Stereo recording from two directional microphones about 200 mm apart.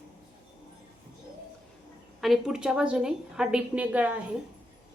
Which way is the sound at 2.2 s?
Centre (ahead or behind).